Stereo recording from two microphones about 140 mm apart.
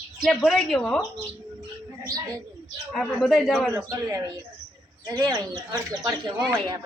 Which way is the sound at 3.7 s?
25° right (ahead or behind).